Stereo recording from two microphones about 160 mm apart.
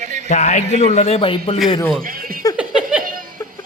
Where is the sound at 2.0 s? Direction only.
65° right (ahead or behind).